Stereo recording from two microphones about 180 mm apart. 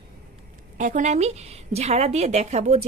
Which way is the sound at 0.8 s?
45° right (ahead or behind).